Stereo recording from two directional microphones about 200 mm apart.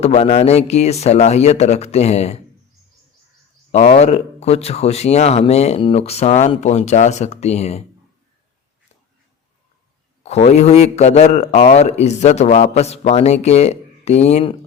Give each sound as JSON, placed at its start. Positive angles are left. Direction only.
{"t": 0.0, "sound": "a man's voice", "side_deg": 30}
{"t": 3.7, "sound": "a man's voice", "side_deg": 35}
{"t": 10.2, "sound": "a man's voice", "side_deg": 35}